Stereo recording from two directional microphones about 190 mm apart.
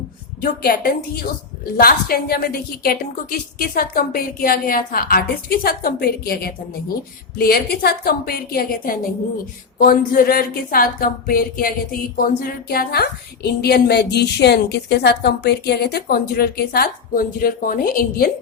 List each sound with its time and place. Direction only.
0.4 s speech: 50° left (ahead or behind)